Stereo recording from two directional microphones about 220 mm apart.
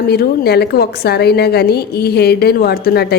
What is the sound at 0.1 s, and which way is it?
A woman's voice, 45° left (ahead or behind).